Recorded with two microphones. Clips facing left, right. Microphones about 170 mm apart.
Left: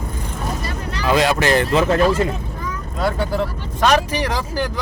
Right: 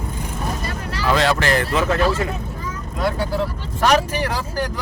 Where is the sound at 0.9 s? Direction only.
15° left (ahead or behind).